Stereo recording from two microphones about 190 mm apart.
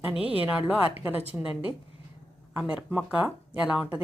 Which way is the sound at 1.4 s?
5° right (ahead or behind).